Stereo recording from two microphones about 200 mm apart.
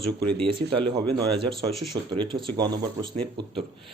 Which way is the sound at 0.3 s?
25° right (ahead or behind).